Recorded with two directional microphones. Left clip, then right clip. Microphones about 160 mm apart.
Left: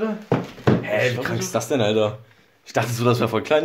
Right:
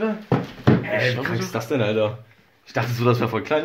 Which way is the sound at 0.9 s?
10° left (ahead or behind).